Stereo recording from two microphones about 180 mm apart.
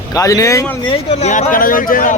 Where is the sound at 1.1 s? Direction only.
40° left (ahead or behind).